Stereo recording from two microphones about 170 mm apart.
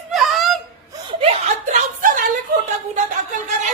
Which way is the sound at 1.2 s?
40° right (ahead or behind).